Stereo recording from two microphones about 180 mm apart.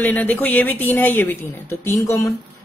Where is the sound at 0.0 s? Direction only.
10° left (ahead or behind).